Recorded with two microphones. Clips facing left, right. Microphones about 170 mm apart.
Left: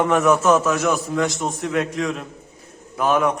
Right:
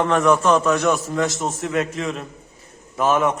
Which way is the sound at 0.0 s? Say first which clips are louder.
Even; 10° left (ahead or behind).